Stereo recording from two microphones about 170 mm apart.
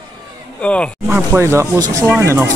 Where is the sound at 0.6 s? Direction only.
5° left (ahead or behind).